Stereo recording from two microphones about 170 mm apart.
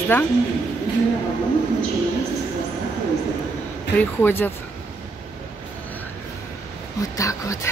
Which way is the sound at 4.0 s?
15° left (ahead or behind).